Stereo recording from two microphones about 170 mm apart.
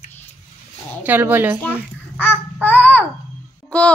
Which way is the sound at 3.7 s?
5° left (ahead or behind).